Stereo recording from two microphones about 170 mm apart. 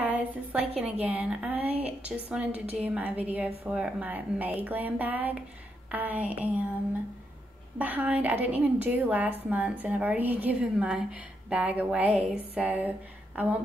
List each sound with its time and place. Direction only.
0.0 s a woman's voice: 10° right (ahead or behind)
7.8 s a woman's voice: 10° right (ahead or behind)